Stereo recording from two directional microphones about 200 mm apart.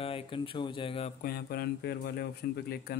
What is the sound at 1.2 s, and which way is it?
Speech, 50° left (ahead or behind).